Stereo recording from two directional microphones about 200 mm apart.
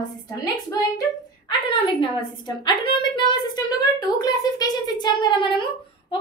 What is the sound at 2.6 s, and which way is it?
A woman's voice, 25° left (ahead or behind).